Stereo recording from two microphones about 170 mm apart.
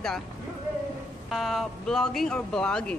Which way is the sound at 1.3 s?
Centre (ahead or behind).